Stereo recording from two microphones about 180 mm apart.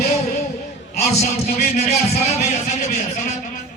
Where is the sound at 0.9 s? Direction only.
40° left (ahead or behind).